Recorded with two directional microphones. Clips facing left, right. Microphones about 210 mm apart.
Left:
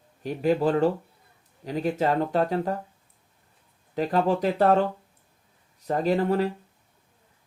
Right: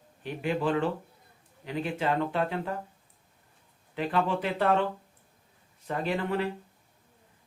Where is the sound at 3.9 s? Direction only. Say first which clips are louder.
Left 5 dB; 40° left (ahead or behind).